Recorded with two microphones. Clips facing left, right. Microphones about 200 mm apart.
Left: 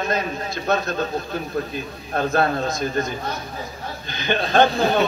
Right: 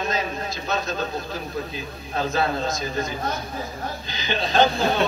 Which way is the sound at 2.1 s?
55° left (ahead or behind).